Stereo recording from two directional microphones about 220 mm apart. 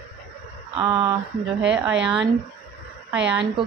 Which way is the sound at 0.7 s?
20° right (ahead or behind).